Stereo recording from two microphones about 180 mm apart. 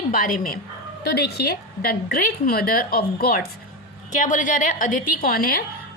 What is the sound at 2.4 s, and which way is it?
A woman's voice, 55° left (ahead or behind).